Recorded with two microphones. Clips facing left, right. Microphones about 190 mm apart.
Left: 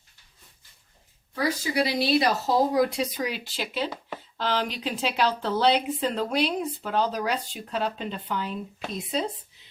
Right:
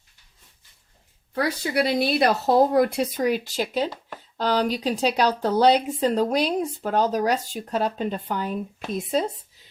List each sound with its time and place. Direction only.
1.4 s a woman's voice: 60° right (ahead or behind)